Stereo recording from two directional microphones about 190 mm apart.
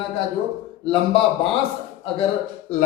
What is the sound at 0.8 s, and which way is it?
Speech, 30° left (ahead or behind).